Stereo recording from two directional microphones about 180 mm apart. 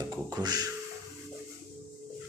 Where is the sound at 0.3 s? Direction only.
20° right (ahead or behind).